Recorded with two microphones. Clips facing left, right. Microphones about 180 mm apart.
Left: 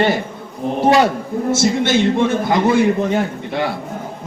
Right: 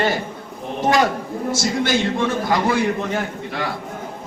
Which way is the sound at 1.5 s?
25° left (ahead or behind).